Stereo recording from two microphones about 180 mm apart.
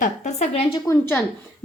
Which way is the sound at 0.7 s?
15° left (ahead or behind).